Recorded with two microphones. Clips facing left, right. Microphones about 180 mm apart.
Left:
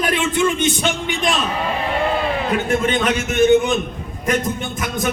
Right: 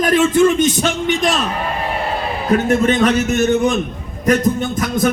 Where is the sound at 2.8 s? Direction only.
45° right (ahead or behind).